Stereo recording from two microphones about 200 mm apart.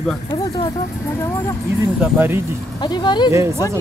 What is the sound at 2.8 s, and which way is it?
Speech, 20° left (ahead or behind).